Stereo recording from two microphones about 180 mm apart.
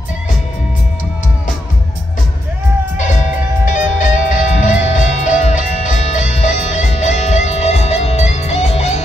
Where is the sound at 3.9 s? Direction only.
45° left (ahead or behind).